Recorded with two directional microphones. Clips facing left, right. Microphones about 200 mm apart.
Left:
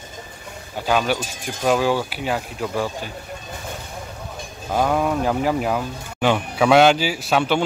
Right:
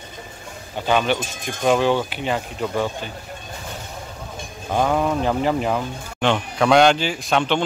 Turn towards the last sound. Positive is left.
turn(degrees=5)  # may be behind; listen again after turning